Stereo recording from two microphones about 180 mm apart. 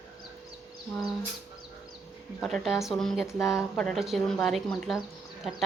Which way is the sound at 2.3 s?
Centre (ahead or behind).